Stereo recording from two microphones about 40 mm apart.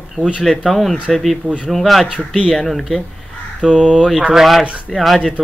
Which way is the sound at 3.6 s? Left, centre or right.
Right.